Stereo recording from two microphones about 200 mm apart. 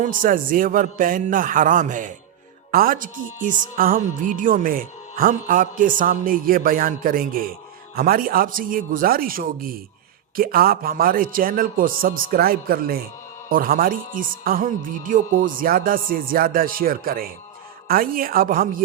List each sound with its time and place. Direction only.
0.0 s speech: 45° right (ahead or behind)